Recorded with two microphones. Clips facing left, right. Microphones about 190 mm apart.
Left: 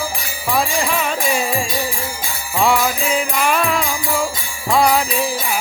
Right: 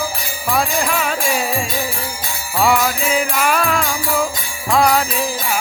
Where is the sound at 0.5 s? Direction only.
Centre (ahead or behind).